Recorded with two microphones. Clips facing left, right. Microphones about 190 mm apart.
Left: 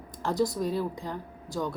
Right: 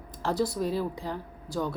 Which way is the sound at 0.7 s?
10° right (ahead or behind).